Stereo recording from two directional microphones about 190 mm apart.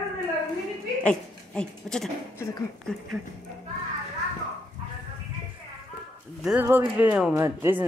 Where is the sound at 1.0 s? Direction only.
5° left (ahead or behind).